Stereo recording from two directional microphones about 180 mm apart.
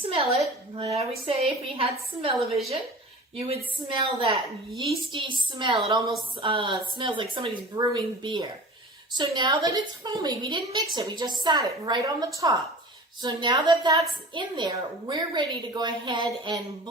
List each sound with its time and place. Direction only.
0.0 s a woman's voice: 30° right (ahead or behind)